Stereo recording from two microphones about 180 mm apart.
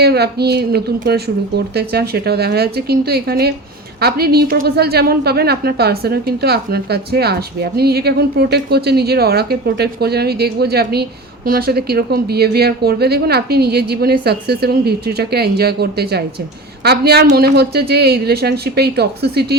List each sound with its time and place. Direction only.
0.0 s a woman's voice: 60° right (ahead or behind)